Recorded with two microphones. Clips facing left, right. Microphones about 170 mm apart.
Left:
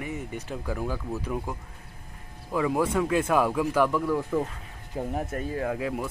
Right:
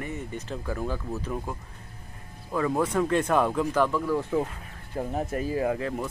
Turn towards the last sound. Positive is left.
turn(degrees=10)  # may be behind; listen again after turning